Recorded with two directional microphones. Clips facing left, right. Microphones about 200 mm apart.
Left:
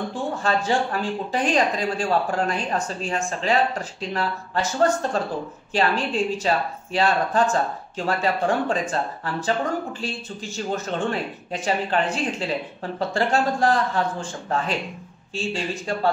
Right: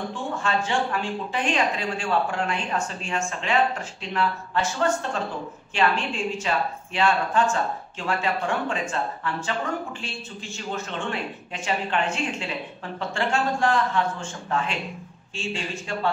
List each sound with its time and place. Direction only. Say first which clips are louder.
0.4 s speech: left 2 dB; 40° left (ahead or behind)